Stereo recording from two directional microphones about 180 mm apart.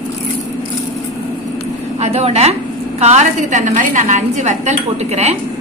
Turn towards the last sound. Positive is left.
turn(degrees=-40)  # may be behind; listen again after turning